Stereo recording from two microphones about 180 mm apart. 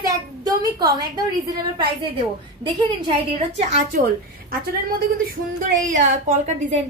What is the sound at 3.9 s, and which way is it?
Speech, 55° right (ahead or behind).